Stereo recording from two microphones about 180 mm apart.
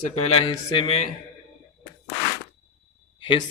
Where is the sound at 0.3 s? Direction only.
30° left (ahead or behind).